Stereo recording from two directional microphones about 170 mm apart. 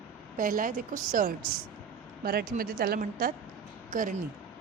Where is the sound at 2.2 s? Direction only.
65° right (ahead or behind).